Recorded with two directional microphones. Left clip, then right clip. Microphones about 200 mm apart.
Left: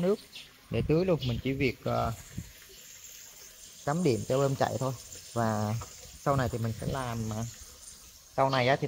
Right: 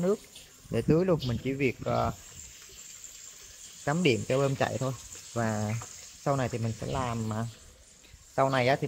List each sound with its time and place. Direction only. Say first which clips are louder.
0.7 s speech: right 2 dB; 15° right (ahead or behind)
3.8 s speech: right 2 dB; 15° right (ahead or behind)